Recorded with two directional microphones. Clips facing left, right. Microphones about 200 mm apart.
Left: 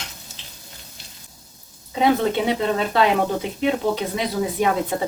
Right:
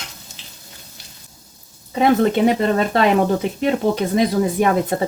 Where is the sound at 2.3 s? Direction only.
45° right (ahead or behind).